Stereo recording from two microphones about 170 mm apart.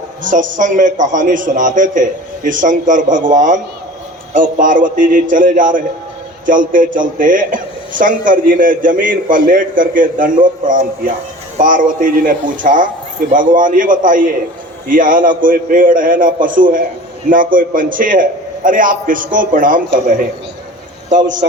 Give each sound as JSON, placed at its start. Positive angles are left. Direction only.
{"t": 0.2, "sound": "a man's voice", "side_deg": -50}